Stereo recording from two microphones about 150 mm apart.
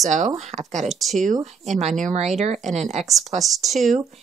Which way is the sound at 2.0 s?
55° right (ahead or behind).